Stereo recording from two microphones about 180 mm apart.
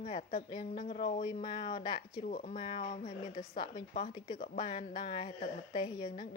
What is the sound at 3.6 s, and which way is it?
Speech, 30° left (ahead or behind).